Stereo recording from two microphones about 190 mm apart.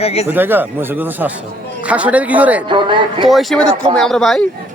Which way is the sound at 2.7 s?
25° right (ahead or behind).